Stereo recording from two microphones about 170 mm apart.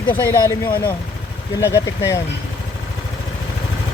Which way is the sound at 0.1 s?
15° left (ahead or behind).